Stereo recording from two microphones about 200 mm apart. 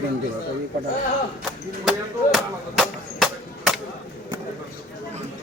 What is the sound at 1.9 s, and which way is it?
Chop, centre (ahead or behind).